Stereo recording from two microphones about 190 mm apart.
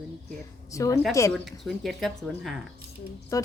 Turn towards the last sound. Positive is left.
turn(degrees=20)  # may be behind; listen again after turning